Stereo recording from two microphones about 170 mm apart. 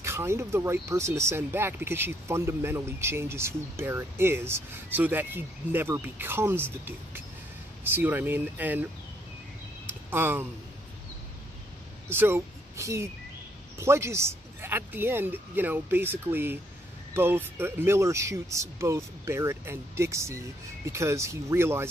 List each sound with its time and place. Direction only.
0.0 s speech: 15° right (ahead or behind)
9.8 s a sound: 15° right (ahead or behind)
12.1 s speech: 15° right (ahead or behind)